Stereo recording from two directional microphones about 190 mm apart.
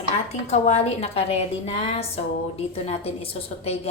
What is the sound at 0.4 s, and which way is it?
A woman's voice, 35° left (ahead or behind).